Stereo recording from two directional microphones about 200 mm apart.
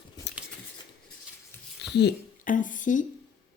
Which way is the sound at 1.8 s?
55° left (ahead or behind).